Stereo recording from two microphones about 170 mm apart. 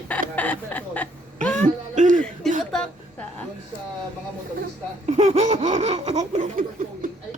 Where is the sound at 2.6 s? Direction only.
5° left (ahead or behind).